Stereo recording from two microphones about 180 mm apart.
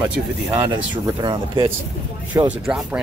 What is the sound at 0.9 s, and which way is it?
Speech, 25° right (ahead or behind).